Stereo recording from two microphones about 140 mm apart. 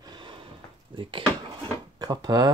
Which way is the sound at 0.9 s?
35° right (ahead or behind).